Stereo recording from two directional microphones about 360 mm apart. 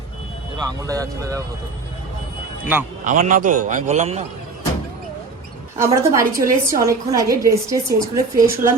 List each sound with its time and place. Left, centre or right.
0.6 s a woman's voice: centre
3.0 s a man's voice: right
5.8 s a woman's voice: centre